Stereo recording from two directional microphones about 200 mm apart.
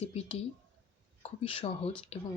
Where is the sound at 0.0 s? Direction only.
30° left (ahead or behind).